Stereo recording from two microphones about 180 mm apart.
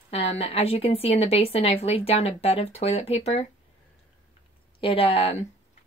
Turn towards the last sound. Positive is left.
turn(degrees=30)  # may be behind; listen again after turning